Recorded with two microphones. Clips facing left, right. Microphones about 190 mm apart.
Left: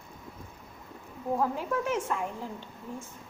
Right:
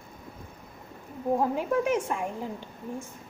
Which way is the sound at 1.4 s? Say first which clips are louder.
Right 2 dB; 20° right (ahead or behind).